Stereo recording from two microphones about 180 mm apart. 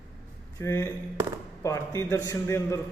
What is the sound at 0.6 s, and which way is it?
Speech, 15° left (ahead or behind).